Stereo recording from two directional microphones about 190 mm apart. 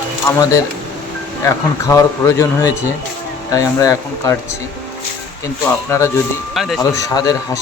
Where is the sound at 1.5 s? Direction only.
15° left (ahead or behind).